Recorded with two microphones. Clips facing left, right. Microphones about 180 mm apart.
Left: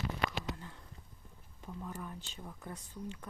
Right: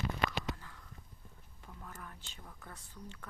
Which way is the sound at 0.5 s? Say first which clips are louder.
Left 5 dB; 25° left (ahead or behind).